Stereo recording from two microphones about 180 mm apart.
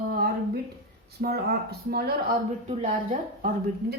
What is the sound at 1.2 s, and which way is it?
Speech, 60° right (ahead or behind).